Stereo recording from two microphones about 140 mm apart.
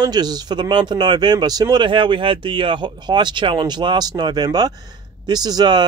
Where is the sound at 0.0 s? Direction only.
30° right (ahead or behind).